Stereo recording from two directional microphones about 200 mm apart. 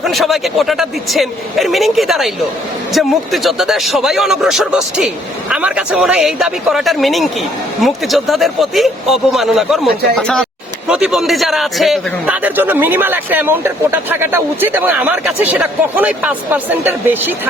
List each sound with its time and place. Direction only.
0.0 s a man's voice: centre (ahead or behind)